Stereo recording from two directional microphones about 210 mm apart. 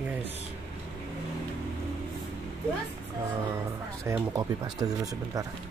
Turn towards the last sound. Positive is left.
turn(degrees=-15)  # may be behind; listen again after turning